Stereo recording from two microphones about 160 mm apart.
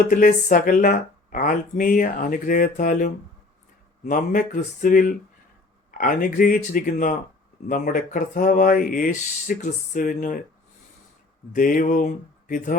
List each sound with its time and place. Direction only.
0.1 s speech: 55° left (ahead or behind)
11.5 s mantra: 55° left (ahead or behind)